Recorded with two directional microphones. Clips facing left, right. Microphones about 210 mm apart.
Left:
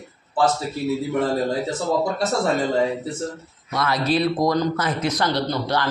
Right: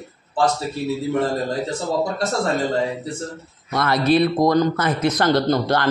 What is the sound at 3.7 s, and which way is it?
Speech, 55° right (ahead or behind).